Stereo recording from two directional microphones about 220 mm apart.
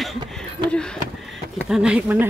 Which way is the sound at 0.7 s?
5° left (ahead or behind).